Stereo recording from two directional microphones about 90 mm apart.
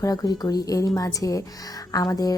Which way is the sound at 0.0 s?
45° left (ahead or behind).